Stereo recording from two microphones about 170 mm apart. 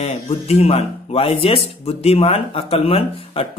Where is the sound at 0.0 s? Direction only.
35° left (ahead or behind).